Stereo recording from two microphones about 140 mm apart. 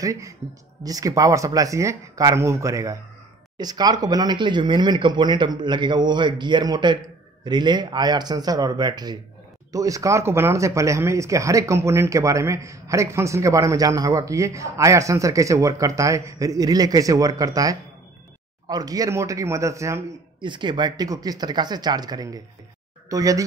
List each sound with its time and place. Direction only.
0.0 s speech: 20° right (ahead or behind)
20.3 s speech: 35° right (ahead or behind)